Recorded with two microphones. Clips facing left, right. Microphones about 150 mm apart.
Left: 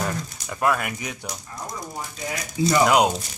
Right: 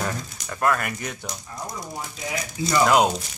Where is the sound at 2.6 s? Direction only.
30° left (ahead or behind).